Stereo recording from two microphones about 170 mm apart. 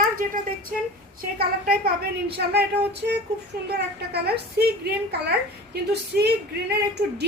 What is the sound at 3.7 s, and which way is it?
A woman's voice, 70° right (ahead or behind).